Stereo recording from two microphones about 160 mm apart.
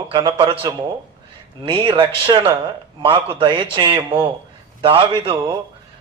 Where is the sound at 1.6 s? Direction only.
30° right (ahead or behind).